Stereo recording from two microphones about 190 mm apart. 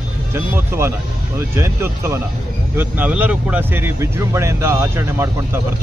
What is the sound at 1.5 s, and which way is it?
Speech, 15° right (ahead or behind).